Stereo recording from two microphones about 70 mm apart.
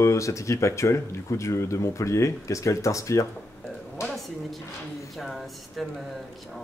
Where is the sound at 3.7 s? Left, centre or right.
Centre.